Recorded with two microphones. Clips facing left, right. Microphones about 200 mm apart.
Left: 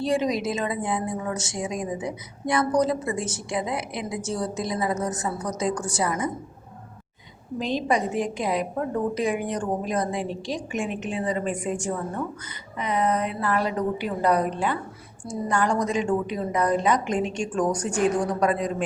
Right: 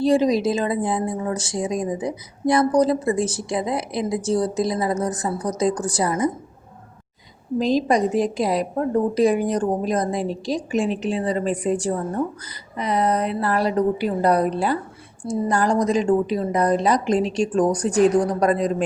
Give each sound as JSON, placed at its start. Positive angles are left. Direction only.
{"t": 0.0, "sound": "a woman's voice", "side_deg": -35}
{"t": 7.6, "sound": "a woman's voice", "side_deg": -40}